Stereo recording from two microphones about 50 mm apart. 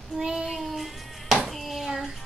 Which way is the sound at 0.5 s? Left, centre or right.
Centre.